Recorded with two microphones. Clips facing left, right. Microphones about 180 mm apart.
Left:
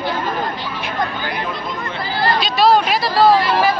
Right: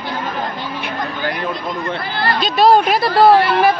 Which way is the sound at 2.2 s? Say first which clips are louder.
Right 1 dB; 50° right (ahead or behind).